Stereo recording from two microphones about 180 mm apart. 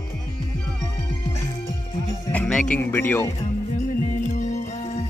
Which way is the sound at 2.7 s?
10° left (ahead or behind).